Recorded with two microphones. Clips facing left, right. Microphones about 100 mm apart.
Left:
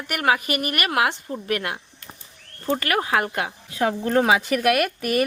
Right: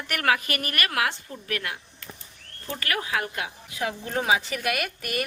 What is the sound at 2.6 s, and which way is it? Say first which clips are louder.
Speech: left 10 dB; 45° left (ahead or behind).